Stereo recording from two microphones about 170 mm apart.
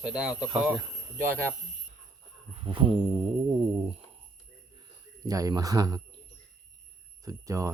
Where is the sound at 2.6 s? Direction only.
30° right (ahead or behind).